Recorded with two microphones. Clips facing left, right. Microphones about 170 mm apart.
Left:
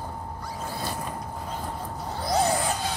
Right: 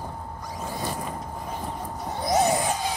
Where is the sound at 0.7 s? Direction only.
15° right (ahead or behind).